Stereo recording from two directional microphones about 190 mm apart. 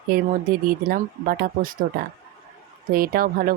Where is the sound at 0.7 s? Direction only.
50° right (ahead or behind).